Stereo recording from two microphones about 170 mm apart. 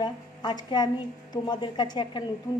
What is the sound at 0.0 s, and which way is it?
A woman's voice, 25° left (ahead or behind).